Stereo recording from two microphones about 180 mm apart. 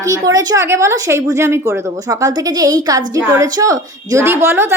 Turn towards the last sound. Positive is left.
turn(degrees=-15)  # may be behind; listen again after turning